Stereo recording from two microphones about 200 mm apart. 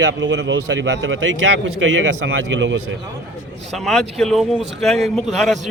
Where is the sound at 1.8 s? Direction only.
85° right.